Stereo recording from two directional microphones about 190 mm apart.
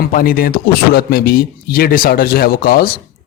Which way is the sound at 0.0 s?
50° left (ahead or behind).